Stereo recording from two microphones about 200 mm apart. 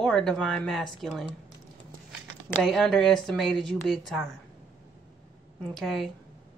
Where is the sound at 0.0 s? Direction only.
5° left (ahead or behind).